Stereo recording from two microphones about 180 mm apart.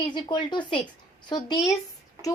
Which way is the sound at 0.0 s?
25° left (ahead or behind).